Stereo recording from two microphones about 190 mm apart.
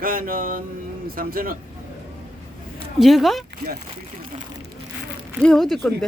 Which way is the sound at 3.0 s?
Centre (ahead or behind).